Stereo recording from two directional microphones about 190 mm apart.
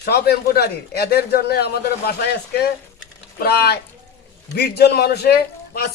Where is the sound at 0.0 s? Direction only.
55° left (ahead or behind).